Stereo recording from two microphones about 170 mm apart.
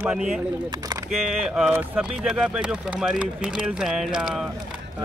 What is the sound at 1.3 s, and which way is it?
Speech, 5° right (ahead or behind).